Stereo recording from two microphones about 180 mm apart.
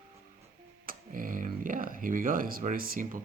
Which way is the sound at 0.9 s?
50° right (ahead or behind).